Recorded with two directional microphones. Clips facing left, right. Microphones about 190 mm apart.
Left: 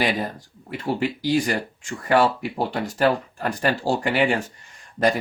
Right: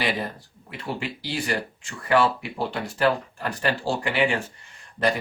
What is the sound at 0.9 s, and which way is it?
Speech, 40° left (ahead or behind).